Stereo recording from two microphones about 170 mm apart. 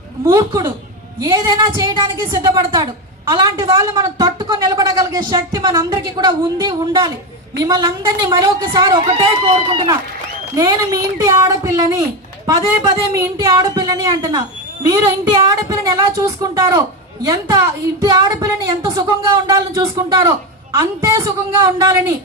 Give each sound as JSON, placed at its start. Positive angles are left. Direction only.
{"t": 0.3, "sound": "speech", "side_deg": -20}